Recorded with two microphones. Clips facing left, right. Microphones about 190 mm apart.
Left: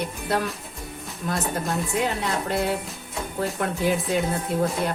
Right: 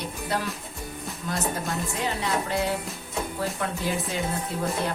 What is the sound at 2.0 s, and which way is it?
Music, 60° left (ahead or behind).